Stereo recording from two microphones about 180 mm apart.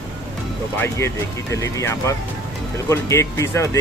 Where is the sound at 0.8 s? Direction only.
15° left (ahead or behind).